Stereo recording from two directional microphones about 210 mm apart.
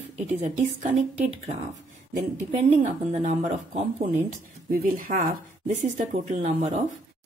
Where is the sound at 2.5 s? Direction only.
35° right (ahead or behind).